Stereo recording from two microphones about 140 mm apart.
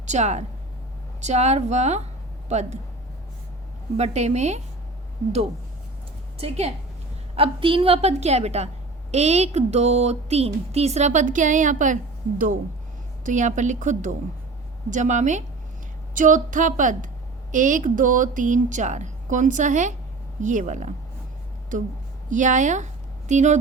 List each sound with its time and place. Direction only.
0.0 s speech: 55° right (ahead or behind)
3.9 s speech: 50° right (ahead or behind)
6.3 s a woman's voice: 45° right (ahead or behind); by 11.9 s 65° right (ahead or behind)
13.2 s a woman's voice: 65° right (ahead or behind)